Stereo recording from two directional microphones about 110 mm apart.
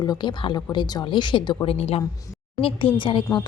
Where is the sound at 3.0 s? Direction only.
50° left (ahead or behind).